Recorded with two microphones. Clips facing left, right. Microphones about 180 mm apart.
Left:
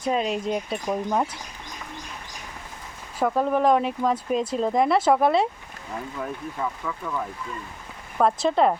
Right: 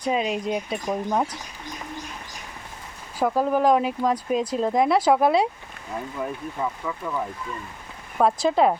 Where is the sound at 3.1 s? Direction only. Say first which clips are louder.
Right 1 dB; 5° right (ahead or behind).